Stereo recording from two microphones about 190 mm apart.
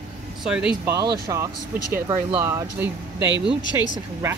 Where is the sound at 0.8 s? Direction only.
20° right (ahead or behind).